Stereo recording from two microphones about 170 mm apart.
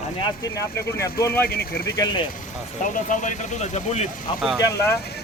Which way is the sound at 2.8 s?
50° left (ahead or behind).